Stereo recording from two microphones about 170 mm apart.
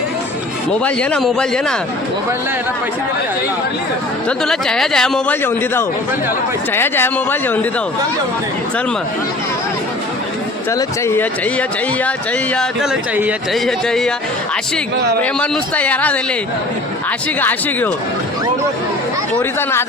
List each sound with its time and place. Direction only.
0.9 s a man's voice: 5° left (ahead or behind)
4.3 s a man's voice: 5° left (ahead or behind)
10.7 s a man's voice: 15° left (ahead or behind)
12.5 s a man's voice: 5° right (ahead or behind)
15.2 s a man's voice: 10° left (ahead or behind)
19.4 s a man's voice: 15° left (ahead or behind)